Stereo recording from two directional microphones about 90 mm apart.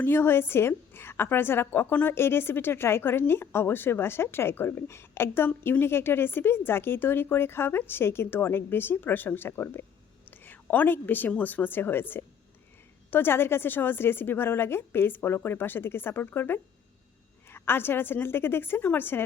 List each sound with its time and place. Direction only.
0.0 s a woman's voice: 25° left (ahead or behind)